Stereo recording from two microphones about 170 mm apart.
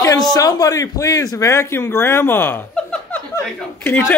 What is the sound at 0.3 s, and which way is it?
Speech, 20° left (ahead or behind).